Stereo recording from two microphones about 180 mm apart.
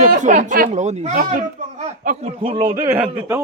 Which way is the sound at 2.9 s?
5° right (ahead or behind).